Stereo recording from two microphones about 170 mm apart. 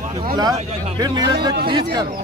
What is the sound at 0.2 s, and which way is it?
Speech, 25° right (ahead or behind).